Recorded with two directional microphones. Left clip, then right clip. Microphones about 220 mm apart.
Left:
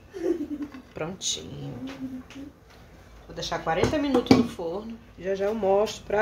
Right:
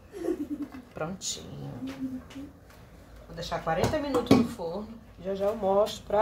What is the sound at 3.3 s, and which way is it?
Speech, 40° left (ahead or behind).